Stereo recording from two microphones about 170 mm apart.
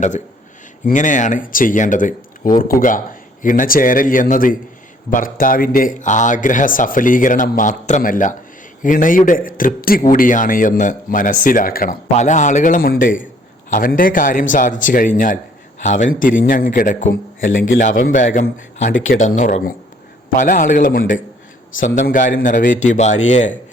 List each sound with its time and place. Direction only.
0.9 s a man's voice: 50° left (ahead or behind)
17.4 s speech: 90° left
17.7 s a man's voice: 50° left (ahead or behind)